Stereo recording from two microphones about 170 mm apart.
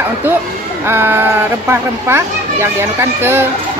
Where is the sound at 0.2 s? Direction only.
10° right (ahead or behind).